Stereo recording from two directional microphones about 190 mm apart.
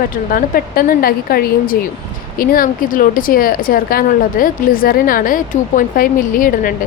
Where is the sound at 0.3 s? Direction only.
50° left (ahead or behind).